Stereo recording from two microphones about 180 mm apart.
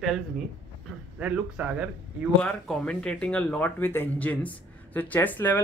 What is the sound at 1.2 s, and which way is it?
Speech, 10° right (ahead or behind).